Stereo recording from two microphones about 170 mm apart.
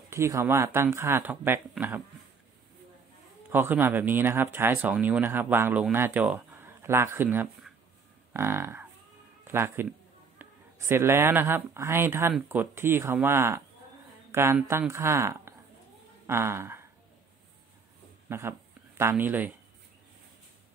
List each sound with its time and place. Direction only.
0.1 s speech: 15° right (ahead or behind)
3.4 s speech: 10° right (ahead or behind)
8.3 s livestock: 15° right (ahead or behind)
9.4 s speech: 15° right (ahead or behind)
18.3 s speech: 15° right (ahead or behind)